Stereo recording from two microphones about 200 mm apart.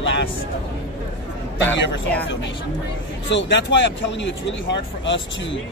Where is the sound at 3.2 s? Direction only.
65° left (ahead or behind).